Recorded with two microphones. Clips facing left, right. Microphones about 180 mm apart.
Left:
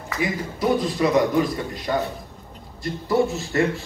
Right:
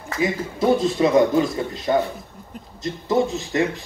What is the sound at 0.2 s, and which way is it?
A man's voice, 25° right (ahead or behind).